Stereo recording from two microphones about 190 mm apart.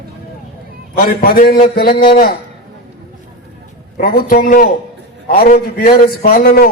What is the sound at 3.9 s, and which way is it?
A man's voice, 50° left (ahead or behind).